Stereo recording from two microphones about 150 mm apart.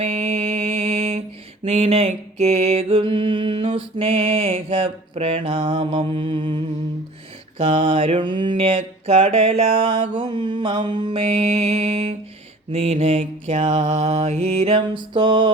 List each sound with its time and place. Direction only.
0.0 s mantra: 45° right (ahead or behind)
7.6 s mantra: 35° right (ahead or behind)